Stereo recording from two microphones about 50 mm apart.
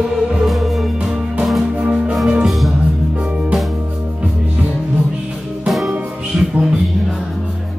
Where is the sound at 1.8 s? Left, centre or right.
Right.